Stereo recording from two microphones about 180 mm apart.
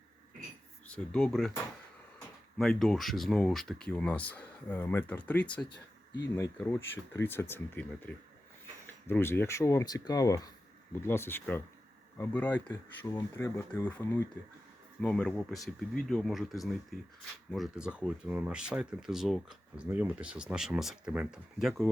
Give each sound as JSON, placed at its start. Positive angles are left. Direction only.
{"t": 0.9, "sound": "speech", "side_deg": 5}
{"t": 2.6, "sound": "speech", "side_deg": 0}